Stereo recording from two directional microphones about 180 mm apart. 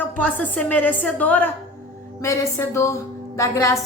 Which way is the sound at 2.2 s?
15° left (ahead or behind).